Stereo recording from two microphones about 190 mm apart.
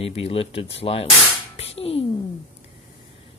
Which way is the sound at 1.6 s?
30° left (ahead or behind).